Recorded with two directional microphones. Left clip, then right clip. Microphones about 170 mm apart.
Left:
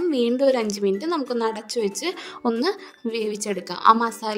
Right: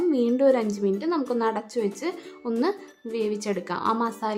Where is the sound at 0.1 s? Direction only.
50° left (ahead or behind).